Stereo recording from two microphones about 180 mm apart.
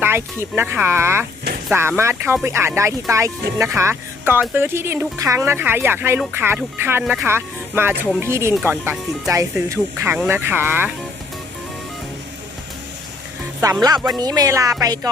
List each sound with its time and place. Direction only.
0.0 s speech: 15° right (ahead or behind)
13.6 s speech: 15° right (ahead or behind)